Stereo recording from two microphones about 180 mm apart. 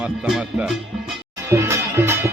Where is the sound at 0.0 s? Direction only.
5° right (ahead or behind).